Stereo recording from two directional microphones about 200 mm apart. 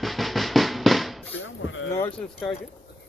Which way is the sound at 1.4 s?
75° left (ahead or behind).